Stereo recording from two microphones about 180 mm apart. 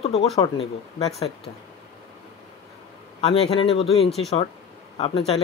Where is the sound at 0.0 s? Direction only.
35° left (ahead or behind).